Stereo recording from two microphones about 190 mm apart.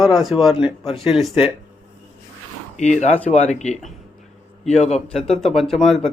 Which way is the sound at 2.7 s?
40° left (ahead or behind).